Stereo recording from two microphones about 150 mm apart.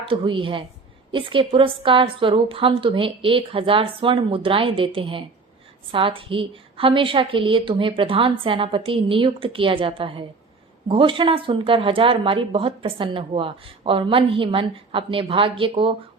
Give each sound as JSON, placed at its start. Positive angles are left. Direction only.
{"t": 0.1, "sound": "speech", "side_deg": -35}